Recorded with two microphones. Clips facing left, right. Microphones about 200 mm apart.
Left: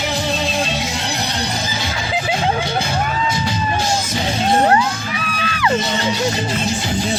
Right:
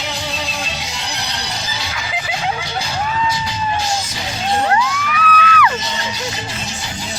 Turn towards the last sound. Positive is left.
turn(degrees=30)  # may be behind; listen again after turning